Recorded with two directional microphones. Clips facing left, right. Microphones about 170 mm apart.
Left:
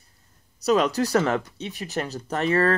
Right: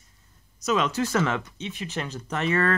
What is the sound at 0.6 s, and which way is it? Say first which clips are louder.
Speech: left 4 dB; 35° left (ahead or behind).